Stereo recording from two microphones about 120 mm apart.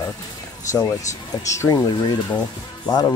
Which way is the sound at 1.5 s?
30° left (ahead or behind).